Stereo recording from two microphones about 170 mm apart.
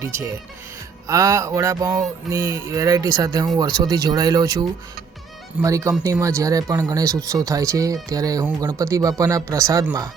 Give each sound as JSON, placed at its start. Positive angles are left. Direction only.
{"t": 0.0, "sound": "speech", "side_deg": -15}